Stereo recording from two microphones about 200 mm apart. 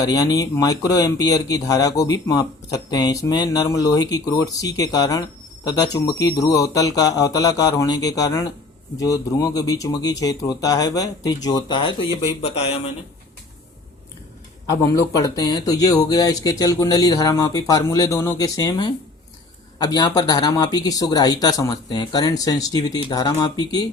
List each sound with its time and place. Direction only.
0.0 s speech: 15° left (ahead or behind)
14.7 s speech: 15° left (ahead or behind)